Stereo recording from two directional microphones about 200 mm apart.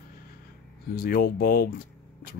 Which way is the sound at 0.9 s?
45° left (ahead or behind).